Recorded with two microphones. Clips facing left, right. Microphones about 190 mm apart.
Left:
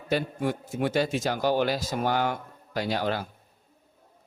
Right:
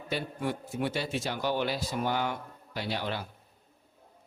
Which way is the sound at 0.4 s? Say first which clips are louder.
Left 4 dB; 45° left (ahead or behind).